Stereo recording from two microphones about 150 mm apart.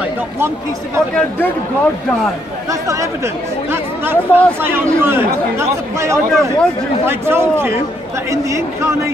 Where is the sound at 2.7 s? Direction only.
20° right (ahead or behind).